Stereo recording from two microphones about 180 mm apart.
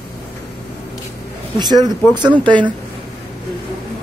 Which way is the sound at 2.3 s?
10° left (ahead or behind).